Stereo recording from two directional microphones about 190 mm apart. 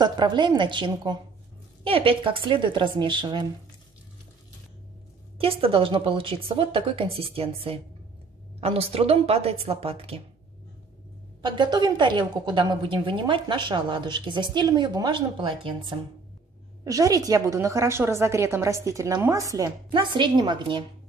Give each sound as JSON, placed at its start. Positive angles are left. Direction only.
{"t": 0.0, "sound": "a woman's voice", "side_deg": -25}
{"t": 5.4, "sound": "a woman's voice", "side_deg": -30}
{"t": 11.4, "sound": "a woman's voice", "side_deg": -25}